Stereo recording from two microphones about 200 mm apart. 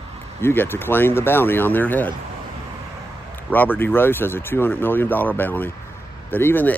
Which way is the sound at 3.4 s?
10° left (ahead or behind).